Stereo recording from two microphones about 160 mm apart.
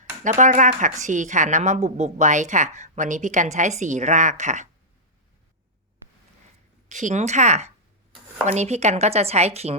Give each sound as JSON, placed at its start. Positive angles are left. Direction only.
{"t": 0.3, "sound": "a woman's voice", "side_deg": -50}
{"t": 6.8, "sound": "a woman's voice", "side_deg": -50}